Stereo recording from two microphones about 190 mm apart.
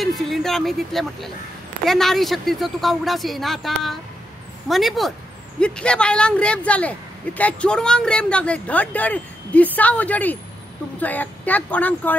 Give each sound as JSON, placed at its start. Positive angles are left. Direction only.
{"t": 0.0, "sound": "a woman's voice", "side_deg": 0}